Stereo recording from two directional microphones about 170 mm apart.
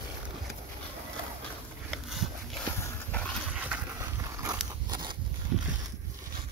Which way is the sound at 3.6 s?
15° right (ahead or behind).